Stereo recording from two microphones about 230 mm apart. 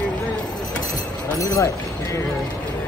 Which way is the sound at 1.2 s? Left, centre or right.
Centre.